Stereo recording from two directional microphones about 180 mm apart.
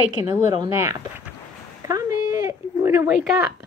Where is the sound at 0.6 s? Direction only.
15° right (ahead or behind).